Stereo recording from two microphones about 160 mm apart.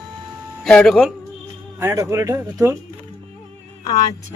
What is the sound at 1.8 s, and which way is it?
Speech, 20° right (ahead or behind).